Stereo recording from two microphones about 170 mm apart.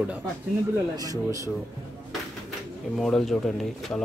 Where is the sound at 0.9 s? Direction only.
20° right (ahead or behind).